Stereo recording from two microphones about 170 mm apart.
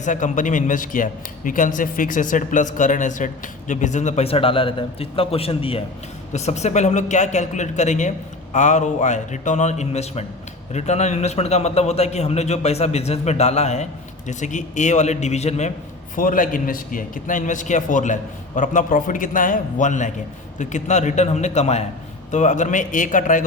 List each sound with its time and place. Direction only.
0.0 s a man's voice: 50° left (ahead or behind)
16.1 s speech: 55° left (ahead or behind)